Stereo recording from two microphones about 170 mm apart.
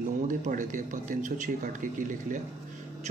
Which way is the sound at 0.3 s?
50° right (ahead or behind).